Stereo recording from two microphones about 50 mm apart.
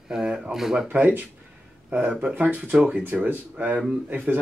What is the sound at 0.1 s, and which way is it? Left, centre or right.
Speech, centre.